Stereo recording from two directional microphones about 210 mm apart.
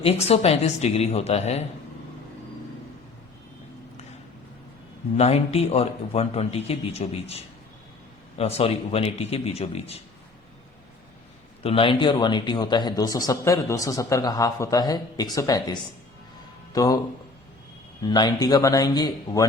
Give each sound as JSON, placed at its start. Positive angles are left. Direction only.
{"t": 0.0, "sound": "speech", "side_deg": 30}
{"t": 5.1, "sound": "speech", "side_deg": 30}
{"t": 11.6, "sound": "a man's voice", "side_deg": 25}
{"t": 18.0, "sound": "a man's voice", "side_deg": 20}